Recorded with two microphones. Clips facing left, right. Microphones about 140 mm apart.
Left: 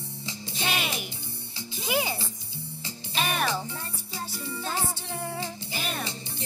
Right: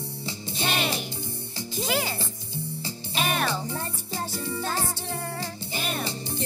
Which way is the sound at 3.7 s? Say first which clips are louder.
Right 6 dB; 45° right (ahead or behind).